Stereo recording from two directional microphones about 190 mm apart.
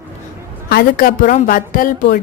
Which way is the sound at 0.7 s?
50° left (ahead or behind).